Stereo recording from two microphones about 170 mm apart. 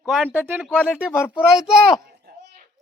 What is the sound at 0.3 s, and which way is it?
Speech, 10° right (ahead or behind).